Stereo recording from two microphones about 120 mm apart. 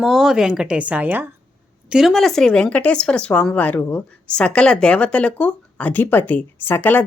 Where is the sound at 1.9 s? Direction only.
Centre (ahead or behind).